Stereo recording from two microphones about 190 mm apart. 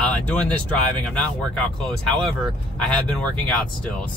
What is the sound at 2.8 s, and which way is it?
Speech, 5° left (ahead or behind).